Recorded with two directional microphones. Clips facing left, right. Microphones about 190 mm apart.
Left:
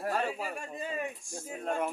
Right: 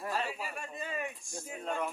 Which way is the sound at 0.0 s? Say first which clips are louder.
Left 4 dB; 55° left (ahead or behind).